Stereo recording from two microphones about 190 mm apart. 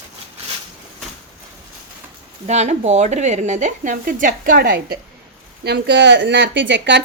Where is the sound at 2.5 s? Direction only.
35° right (ahead or behind).